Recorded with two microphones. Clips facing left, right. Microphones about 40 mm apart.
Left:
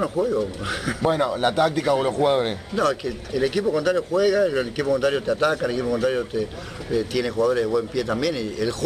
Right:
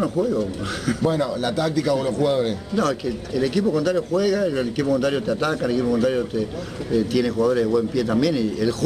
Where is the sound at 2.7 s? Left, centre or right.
Centre.